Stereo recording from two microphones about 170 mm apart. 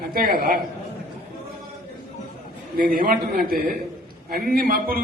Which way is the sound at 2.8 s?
55° right (ahead or behind).